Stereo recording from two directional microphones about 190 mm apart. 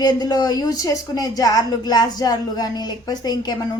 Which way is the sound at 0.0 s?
20° left (ahead or behind).